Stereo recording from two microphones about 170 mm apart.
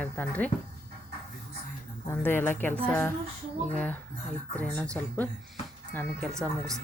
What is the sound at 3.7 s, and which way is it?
Speech, 5° left (ahead or behind).